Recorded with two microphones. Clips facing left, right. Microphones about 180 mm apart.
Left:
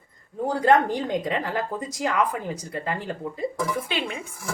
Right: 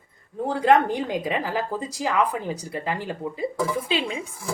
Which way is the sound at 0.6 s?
5° right (ahead or behind).